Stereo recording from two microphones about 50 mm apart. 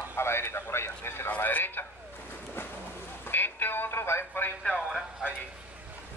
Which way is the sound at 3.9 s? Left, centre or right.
Left.